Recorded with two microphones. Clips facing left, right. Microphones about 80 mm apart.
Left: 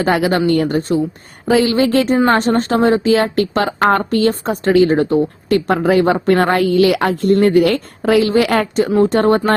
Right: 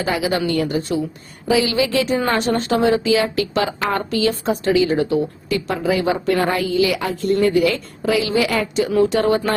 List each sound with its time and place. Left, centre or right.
0.0 s a woman's voice: left
8.9 s speech: left
9.1 s a woman's voice: left